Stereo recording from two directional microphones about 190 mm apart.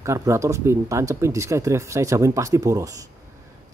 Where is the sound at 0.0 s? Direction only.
15° right (ahead or behind).